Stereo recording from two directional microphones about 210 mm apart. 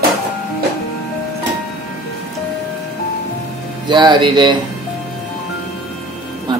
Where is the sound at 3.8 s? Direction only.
20° right (ahead or behind).